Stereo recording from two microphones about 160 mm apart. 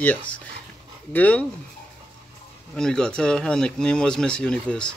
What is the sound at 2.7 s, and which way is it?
Speech, 5° left (ahead or behind).